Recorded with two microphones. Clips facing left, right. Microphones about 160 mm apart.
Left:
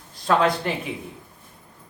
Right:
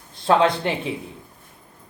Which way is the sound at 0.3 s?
30° right (ahead or behind).